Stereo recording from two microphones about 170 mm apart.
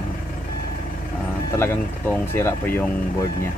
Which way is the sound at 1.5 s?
15° left (ahead or behind).